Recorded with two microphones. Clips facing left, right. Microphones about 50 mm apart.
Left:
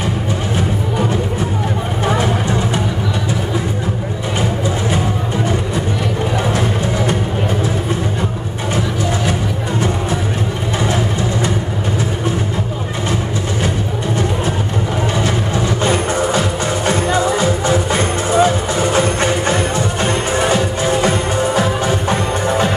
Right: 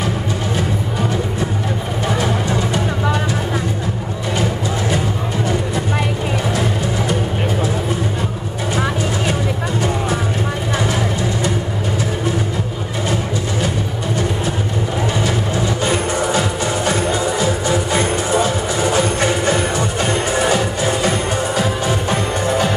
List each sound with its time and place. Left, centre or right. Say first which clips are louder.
15.8 s music: left 4 dB; left